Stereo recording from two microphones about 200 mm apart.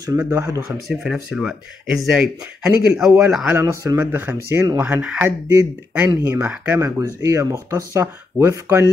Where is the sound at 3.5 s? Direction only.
10° right (ahead or behind).